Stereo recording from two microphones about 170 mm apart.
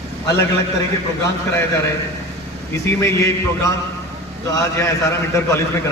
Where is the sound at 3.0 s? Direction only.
20° left (ahead or behind).